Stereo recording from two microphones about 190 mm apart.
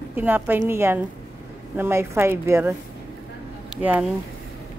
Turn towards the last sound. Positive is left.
turn(degrees=-5)  # may be behind; listen again after turning